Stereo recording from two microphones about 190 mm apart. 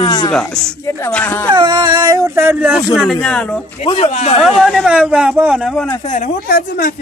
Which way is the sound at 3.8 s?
30° left (ahead or behind).